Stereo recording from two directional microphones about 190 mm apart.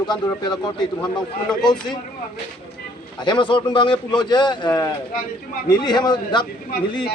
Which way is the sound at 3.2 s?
25° left (ahead or behind).